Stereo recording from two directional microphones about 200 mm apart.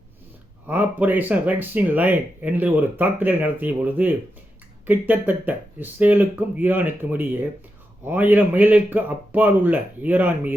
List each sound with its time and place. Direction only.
0.7 s speech: 10° right (ahead or behind)